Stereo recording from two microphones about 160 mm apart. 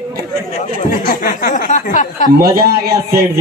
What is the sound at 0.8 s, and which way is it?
Speech, 60° left (ahead or behind).